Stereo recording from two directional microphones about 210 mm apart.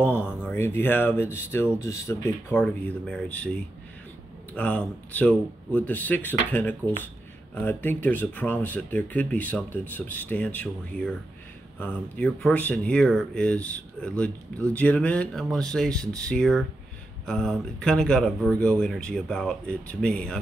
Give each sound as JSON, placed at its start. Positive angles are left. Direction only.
{"t": 0.0, "sound": "speech", "side_deg": 10}
{"t": 4.6, "sound": "speech", "side_deg": 5}